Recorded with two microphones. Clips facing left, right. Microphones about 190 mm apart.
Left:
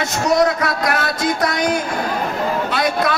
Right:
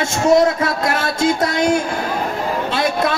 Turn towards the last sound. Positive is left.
turn(degrees=-25)  # may be behind; listen again after turning